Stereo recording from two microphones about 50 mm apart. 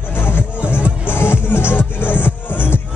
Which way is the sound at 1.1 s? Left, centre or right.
Left.